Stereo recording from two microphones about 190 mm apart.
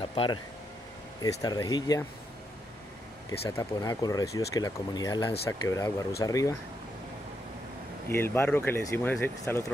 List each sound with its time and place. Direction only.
0.0 s air conditioning: 25° left (ahead or behind)
1.2 s speech: 20° left (ahead or behind)
3.3 s speech: 15° left (ahead or behind)
8.1 s speech: 10° left (ahead or behind)